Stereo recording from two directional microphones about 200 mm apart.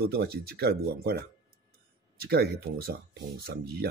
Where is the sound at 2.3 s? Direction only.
50° right (ahead or behind).